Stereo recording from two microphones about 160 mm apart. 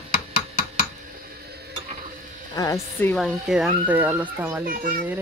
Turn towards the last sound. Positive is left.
turn(degrees=-65)  # may be behind; listen again after turning